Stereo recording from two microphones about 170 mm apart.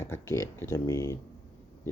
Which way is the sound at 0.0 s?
15° left (ahead or behind).